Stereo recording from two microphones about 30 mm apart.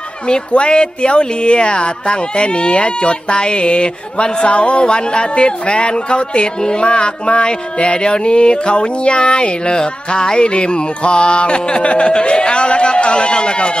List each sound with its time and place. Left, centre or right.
0.5 s speech: left
11.8 s speech: left
12.1 s speech: left